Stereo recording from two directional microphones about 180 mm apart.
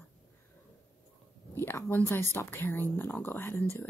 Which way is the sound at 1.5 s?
15° left (ahead or behind).